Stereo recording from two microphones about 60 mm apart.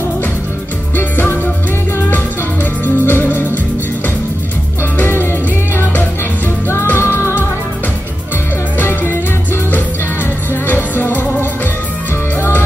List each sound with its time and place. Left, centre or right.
0.9 s music: left
2.8 s music: left
7.0 s music: left
8.7 s music: left
10.7 s music: left